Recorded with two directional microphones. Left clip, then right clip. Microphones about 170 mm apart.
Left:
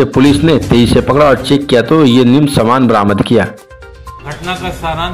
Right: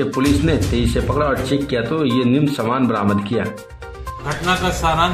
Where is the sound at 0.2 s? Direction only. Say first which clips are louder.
Left 8 dB; 40° left (ahead or behind).